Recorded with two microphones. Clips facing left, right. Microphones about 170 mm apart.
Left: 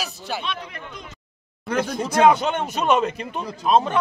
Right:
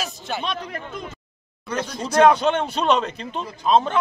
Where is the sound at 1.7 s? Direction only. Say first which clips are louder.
Left 4 dB; 55° left (ahead or behind).